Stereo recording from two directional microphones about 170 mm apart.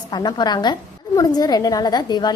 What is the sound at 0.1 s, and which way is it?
A woman's voice, 25° left (ahead or behind).